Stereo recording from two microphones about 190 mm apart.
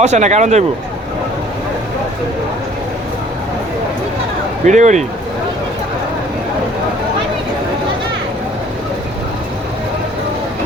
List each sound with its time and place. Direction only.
0.0 s speech: 35° right (ahead or behind)
4.6 s speech: 40° right (ahead or behind)